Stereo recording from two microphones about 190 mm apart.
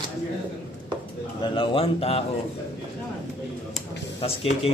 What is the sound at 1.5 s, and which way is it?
Speech, 30° left (ahead or behind).